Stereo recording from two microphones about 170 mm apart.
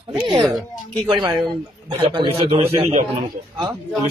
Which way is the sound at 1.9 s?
30° right (ahead or behind).